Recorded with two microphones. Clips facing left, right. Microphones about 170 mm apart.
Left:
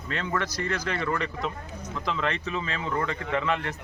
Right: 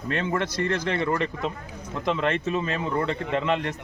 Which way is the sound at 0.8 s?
25° right (ahead or behind).